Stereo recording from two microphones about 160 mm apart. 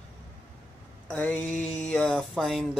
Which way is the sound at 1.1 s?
10° left (ahead or behind).